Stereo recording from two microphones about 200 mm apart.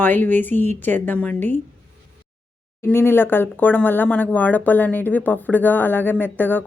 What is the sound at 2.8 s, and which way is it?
Speech, 10° left (ahead or behind).